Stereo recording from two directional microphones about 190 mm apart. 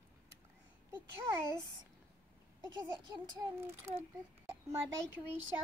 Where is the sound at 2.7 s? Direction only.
20° right (ahead or behind).